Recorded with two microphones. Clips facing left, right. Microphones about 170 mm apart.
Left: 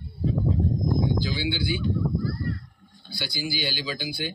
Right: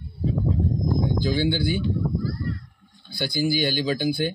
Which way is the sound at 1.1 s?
50° right (ahead or behind).